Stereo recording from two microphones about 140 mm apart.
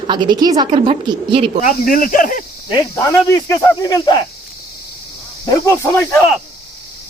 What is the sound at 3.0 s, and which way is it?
Speech, 20° left (ahead or behind).